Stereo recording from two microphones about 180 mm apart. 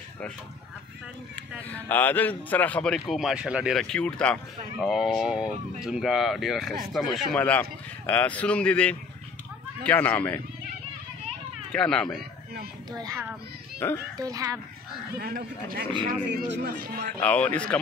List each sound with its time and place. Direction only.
1.7 s a man's voice: 10° left (ahead or behind)
11.2 s children playing: 5° left (ahead or behind)
12.9 s speech: 20° right (ahead or behind)
13.8 s speech: 10° left (ahead or behind)
14.1 s speech: 20° right (ahead or behind)
15.1 s speech: 55° right (ahead or behind)
17.2 s speech: 10° left (ahead or behind)